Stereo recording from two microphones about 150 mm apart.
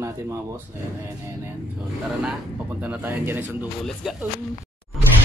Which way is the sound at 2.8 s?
10° right (ahead or behind).